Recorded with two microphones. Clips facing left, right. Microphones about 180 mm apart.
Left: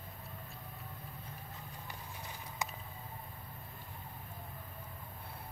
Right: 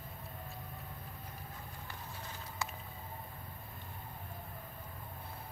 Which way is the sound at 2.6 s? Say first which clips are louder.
Left 1 dB; 20° left (ahead or behind).